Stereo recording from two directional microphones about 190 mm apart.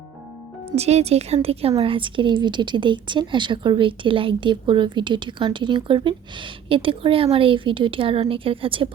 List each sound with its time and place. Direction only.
0.8 s a woman's voice: 35° right (ahead or behind)